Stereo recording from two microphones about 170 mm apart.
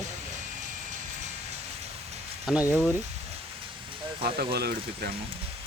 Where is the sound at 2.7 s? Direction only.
15° left (ahead or behind).